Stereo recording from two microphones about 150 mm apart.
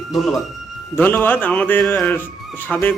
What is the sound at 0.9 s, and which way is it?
A man's voice, 10° left (ahead or behind).